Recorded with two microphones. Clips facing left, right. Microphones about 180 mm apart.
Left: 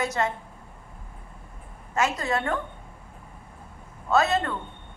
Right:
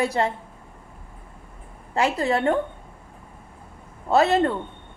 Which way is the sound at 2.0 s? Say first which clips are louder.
Right 4 dB; 30° right (ahead or behind).